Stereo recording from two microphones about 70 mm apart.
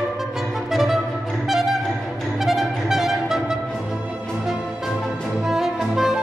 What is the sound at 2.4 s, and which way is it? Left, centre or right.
Music, centre.